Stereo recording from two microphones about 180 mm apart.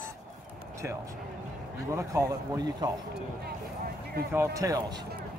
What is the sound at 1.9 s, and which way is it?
Speech, 15° right (ahead or behind).